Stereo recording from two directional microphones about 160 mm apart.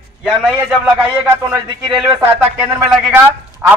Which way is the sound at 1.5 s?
25° right (ahead or behind).